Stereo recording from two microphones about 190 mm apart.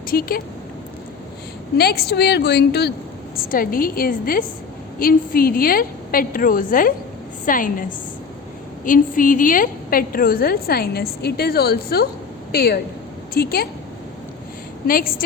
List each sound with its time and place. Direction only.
0.1 s a woman's voice: 50° left (ahead or behind)
1.8 s a woman's voice: 55° left (ahead or behind)
14.8 s a woman's voice: 50° left (ahead or behind)